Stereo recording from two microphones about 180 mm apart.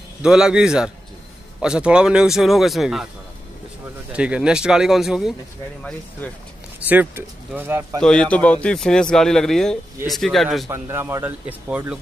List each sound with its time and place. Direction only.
0.2 s speech: 5° right (ahead or behind)
4.1 s speech: 5° right (ahead or behind)
6.9 s speech: 10° right (ahead or behind)
8.0 s speech: 5° left (ahead or behind)
10.7 s speech: 15° right (ahead or behind)